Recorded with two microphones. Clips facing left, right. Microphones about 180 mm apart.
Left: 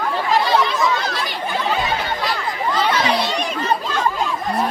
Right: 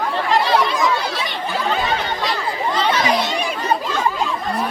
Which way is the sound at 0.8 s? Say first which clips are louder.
Even; 10° right (ahead or behind).